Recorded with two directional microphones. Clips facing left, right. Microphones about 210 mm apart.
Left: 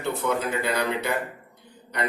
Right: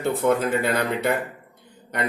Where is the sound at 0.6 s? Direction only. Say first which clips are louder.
Right 3 dB; 50° right (ahead or behind).